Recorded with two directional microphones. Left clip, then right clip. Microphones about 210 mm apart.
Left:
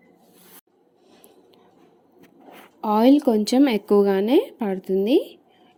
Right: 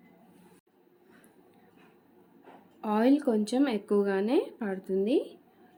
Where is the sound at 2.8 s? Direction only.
25° left (ahead or behind).